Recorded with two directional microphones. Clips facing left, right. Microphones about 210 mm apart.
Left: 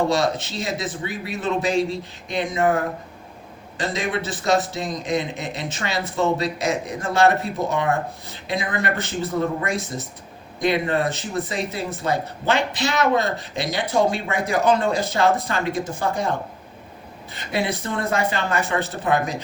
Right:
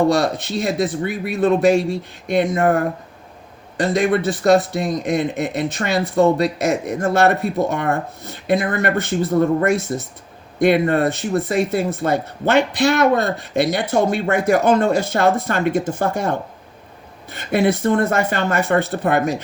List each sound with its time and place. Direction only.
0.1 s speech: 55° right (ahead or behind)
3.8 s speech: 60° right (ahead or behind)
17.3 s speech: 55° right (ahead or behind)